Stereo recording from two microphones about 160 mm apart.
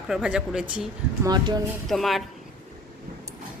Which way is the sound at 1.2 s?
25° right (ahead or behind).